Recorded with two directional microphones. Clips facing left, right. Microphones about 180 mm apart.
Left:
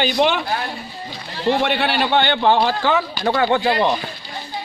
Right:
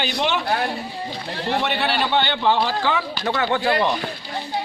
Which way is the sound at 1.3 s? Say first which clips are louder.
Left 7 dB; 60° right (ahead or behind).